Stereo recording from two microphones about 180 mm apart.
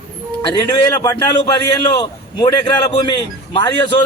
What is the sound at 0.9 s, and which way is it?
A man's voice, 20° left (ahead or behind).